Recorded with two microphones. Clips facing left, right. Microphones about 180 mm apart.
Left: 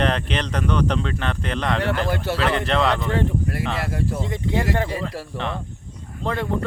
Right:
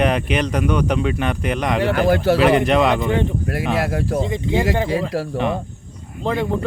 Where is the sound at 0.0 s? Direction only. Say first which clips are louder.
Right 4 dB; 10° right (ahead or behind).